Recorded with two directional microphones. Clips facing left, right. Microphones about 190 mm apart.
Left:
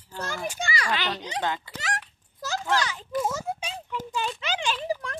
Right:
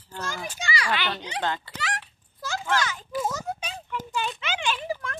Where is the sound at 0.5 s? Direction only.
50° left (ahead or behind).